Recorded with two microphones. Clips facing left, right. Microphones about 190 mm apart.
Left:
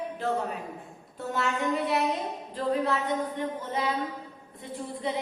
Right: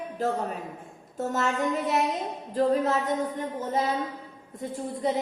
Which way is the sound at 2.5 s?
45° right (ahead or behind).